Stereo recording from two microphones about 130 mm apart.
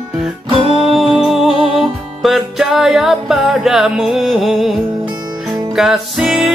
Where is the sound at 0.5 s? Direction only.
50° right (ahead or behind).